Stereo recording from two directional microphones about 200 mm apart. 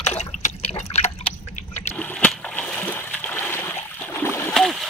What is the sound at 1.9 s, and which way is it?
Splash, 5° left (ahead or behind).